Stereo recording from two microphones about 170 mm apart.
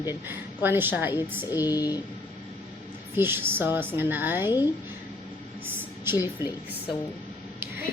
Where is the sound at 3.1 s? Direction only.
15° right (ahead or behind).